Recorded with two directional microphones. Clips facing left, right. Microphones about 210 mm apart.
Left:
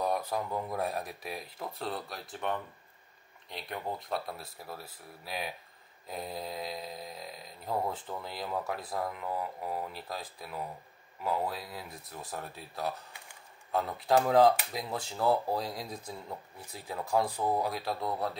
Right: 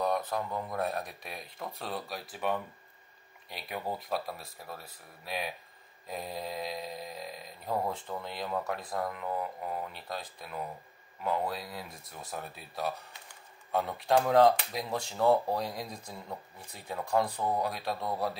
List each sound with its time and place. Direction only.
0.0 s speech: 10° left (ahead or behind)